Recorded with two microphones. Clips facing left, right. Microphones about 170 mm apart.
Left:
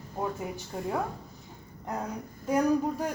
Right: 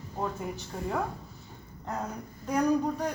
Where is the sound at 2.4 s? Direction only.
10° left (ahead or behind).